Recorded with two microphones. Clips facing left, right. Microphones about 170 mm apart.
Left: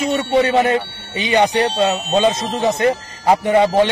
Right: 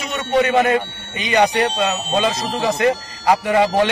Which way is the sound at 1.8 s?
25° left (ahead or behind).